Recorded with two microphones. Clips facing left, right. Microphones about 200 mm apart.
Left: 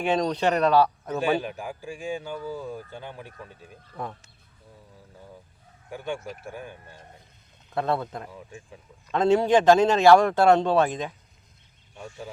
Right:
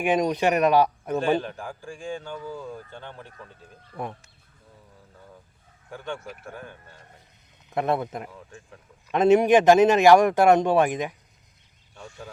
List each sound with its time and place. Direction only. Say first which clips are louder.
0.0 s a man's voice: right 1 dB; 15° right (ahead or behind)
1.2 s speech: even; 10° left (ahead or behind)
5.9 s speech: left 2 dB; 10° left (ahead or behind)
7.7 s a man's voice: right 2 dB; 15° right (ahead or behind)
8.3 s speech: left 2 dB; 10° left (ahead or behind)
9.1 s a man's voice: right 3 dB; 20° right (ahead or behind)